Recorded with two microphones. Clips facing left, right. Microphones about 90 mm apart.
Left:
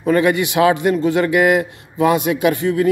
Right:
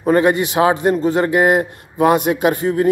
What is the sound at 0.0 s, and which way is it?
A man's voice, 40° right (ahead or behind).